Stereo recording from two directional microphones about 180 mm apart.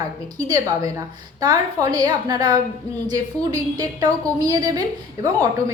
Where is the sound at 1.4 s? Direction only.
20° right (ahead or behind).